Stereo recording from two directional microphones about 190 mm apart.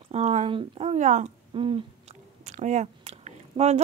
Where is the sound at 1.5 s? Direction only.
30° right (ahead or behind).